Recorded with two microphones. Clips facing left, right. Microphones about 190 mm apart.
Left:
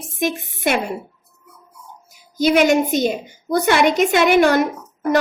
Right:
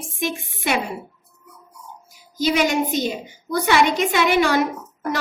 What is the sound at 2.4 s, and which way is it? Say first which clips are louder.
A woman's voice: left 5 dB; 50° left (ahead or behind).